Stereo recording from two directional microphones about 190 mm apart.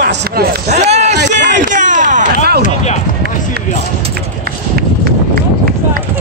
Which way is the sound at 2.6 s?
40° left (ahead or behind).